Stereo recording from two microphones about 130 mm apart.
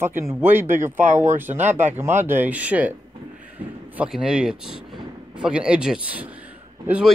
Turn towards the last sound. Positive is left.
turn(degrees=-10)  # may be behind; listen again after turning